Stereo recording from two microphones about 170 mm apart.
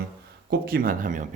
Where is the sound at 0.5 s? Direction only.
70° right (ahead or behind); by 1.2 s 50° right (ahead or behind).